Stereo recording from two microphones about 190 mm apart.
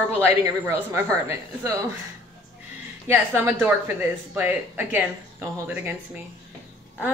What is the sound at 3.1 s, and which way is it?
Speech, 10° right (ahead or behind).